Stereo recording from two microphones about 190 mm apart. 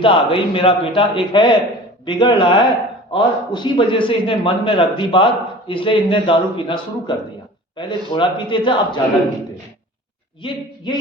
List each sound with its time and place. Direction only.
0.0 s a man's voice: 25° left (ahead or behind)
10.4 s a man's voice: 25° left (ahead or behind)